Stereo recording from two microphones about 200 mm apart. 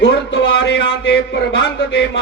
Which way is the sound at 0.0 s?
60° left (ahead or behind).